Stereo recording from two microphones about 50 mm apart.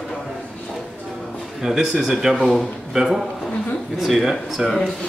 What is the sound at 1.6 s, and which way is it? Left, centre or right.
Speech, centre.